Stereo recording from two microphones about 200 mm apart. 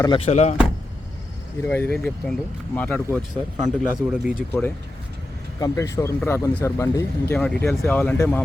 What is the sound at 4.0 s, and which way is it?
Speech, centre (ahead or behind).